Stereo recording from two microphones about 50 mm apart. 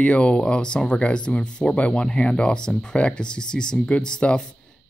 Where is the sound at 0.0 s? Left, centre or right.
Left.